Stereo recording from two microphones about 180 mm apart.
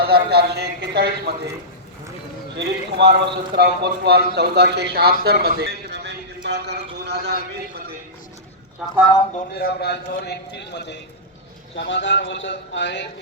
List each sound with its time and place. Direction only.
0.0 s speech: 60° right (ahead or behind)
2.6 s a man's voice: 70° right (ahead or behind)
5.2 s a sound: 65° right (ahead or behind)
9.6 s a man's voice: 65° left (ahead or behind)
11.7 s a man's voice: 85° left